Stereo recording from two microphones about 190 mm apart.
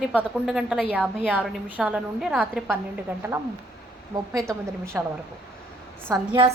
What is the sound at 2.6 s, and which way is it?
Speech, 15° right (ahead or behind).